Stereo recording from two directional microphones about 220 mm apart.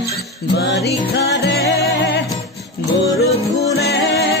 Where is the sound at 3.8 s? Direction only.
50° left (ahead or behind).